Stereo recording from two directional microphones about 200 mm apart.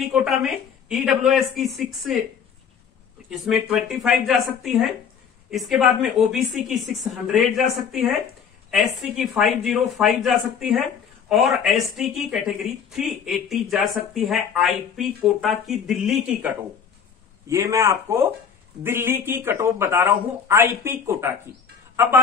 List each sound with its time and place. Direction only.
0.1 s speech: centre (ahead or behind)
3.3 s speech: centre (ahead or behind)
9.1 s speech: centre (ahead or behind)
17.5 s speech: 15° right (ahead or behind)